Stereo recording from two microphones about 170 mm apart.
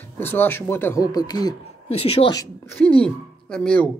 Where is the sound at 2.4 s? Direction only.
10° left (ahead or behind).